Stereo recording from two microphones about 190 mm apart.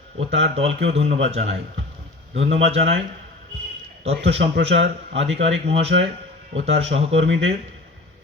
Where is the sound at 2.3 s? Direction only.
75° right (ahead or behind).